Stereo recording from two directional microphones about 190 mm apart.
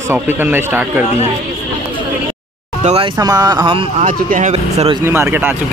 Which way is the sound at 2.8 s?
35° right (ahead or behind).